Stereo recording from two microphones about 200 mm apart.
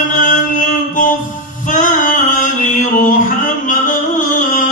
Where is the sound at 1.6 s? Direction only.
40° left (ahead or behind).